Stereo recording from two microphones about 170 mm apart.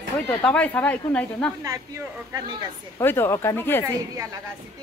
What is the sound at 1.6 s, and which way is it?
Speech, 20° right (ahead or behind).